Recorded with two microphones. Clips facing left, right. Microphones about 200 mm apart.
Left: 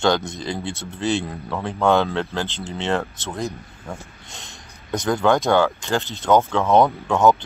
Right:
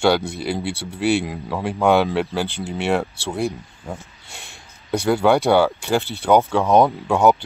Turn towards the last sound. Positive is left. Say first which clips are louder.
# right 1 dB
turn(degrees=-10)  # may be behind; listen again after turning